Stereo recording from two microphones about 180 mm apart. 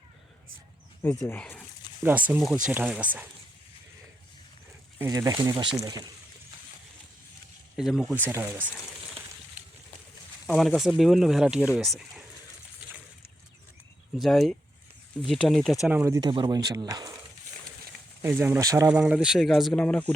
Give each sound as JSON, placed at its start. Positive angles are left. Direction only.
{"t": 1.0, "sound": "speech", "side_deg": 5}
{"t": 2.0, "sound": "speech", "side_deg": -10}
{"t": 4.9, "sound": "speech", "side_deg": -20}
{"t": 7.8, "sound": "speech", "side_deg": 0}
{"t": 8.3, "sound": "speech", "side_deg": -10}
{"t": 10.4, "sound": "speech", "side_deg": 0}
{"t": 14.2, "sound": "speech", "side_deg": 0}
{"t": 18.2, "sound": "speech", "side_deg": -10}
{"t": 18.9, "sound": "speech", "side_deg": -5}